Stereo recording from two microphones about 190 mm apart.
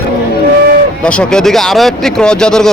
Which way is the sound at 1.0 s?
5° left (ahead or behind).